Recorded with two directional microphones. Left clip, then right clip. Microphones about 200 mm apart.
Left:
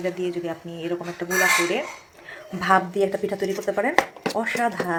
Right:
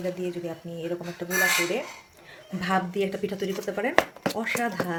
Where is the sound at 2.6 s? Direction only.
5° right (ahead or behind).